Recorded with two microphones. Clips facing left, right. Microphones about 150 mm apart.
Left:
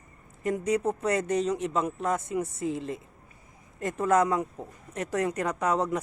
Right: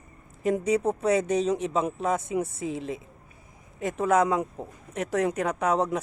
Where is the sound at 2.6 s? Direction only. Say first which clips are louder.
Even; 75° right (ahead or behind).